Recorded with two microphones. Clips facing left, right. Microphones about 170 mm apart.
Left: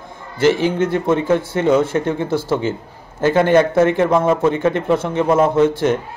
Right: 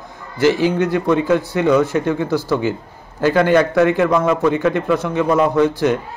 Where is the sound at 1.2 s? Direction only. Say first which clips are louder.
Even; 25° left (ahead or behind).